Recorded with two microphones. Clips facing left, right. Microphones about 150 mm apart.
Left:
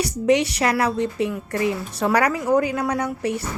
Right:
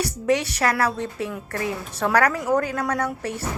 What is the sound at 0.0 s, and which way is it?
Speech, 15° left (ahead or behind).